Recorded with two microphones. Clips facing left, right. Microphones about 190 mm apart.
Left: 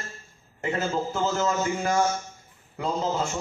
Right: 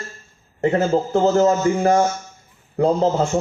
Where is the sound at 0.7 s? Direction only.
60° right (ahead or behind).